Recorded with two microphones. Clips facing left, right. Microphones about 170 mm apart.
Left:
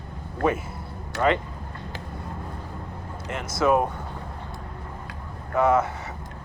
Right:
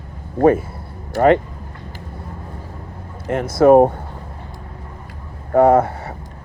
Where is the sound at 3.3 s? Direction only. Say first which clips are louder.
Right 11 dB; 55° right (ahead or behind).